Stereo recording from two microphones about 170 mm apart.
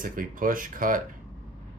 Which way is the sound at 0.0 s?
55° right (ahead or behind).